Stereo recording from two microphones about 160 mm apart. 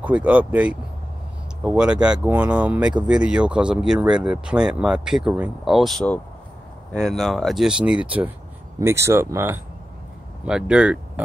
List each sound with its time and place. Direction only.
0.0 s speech: 10° right (ahead or behind)